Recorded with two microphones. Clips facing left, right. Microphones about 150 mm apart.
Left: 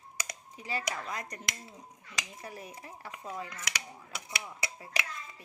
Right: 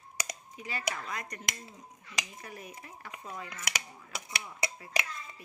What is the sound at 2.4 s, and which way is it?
Speech, 30° left (ahead or behind).